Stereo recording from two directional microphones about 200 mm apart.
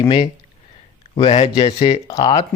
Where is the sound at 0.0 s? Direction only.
25° left (ahead or behind).